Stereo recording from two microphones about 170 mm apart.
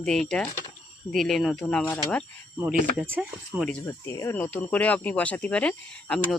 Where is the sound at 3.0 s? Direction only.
10° right (ahead or behind).